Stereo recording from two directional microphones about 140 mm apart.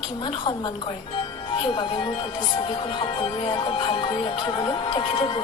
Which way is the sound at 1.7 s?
35° left (ahead or behind).